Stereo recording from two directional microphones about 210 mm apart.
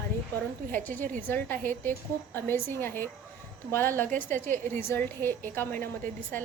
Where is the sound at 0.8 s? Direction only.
10° left (ahead or behind).